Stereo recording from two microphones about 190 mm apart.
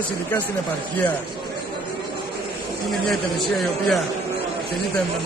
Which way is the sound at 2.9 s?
Centre (ahead or behind).